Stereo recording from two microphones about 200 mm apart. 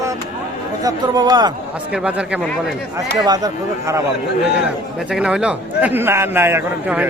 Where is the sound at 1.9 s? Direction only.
5° right (ahead or behind).